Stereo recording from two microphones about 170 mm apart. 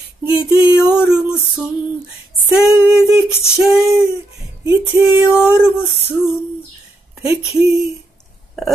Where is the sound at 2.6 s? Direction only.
5° right (ahead or behind).